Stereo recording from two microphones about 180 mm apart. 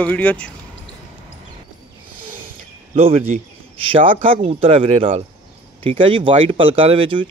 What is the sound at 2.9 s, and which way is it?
Speech, 35° right (ahead or behind).